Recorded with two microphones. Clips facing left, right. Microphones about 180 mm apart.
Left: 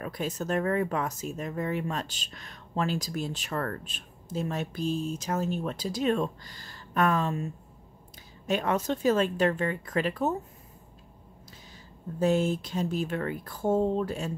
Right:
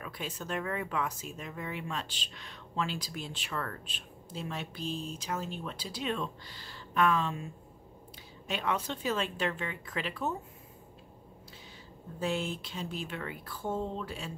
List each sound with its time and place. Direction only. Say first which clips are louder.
0.0 s speech: left 8 dB; 40° left (ahead or behind)
8.5 s speech: left 6 dB; 45° left (ahead or behind)
12.2 s speech: left 8 dB; 45° left (ahead or behind)